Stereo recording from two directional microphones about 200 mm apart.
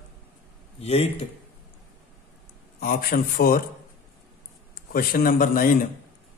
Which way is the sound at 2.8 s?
45° left (ahead or behind).